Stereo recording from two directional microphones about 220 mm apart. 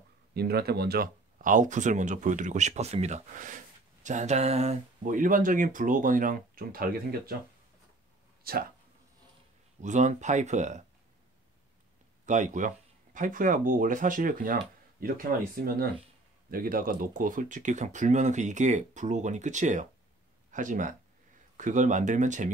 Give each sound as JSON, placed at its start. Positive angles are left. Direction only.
{"t": 0.3, "sound": "speech", "side_deg": -45}
{"t": 8.5, "sound": "speech", "side_deg": -45}
{"t": 9.8, "sound": "speech", "side_deg": -35}
{"t": 12.3, "sound": "speech", "side_deg": -35}